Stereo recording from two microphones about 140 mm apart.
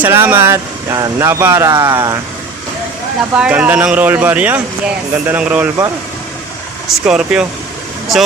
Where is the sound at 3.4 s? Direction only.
10° right (ahead or behind).